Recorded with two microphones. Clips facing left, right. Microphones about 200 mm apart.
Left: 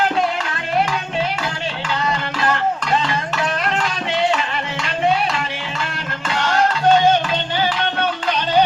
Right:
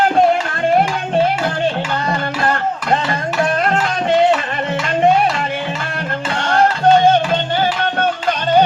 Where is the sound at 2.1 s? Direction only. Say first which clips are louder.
Right 3 dB; 50° right (ahead or behind).